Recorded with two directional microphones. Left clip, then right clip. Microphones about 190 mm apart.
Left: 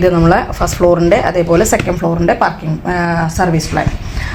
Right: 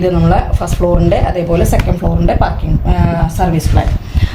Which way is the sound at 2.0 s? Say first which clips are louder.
Left 3 dB; 35° left (ahead or behind).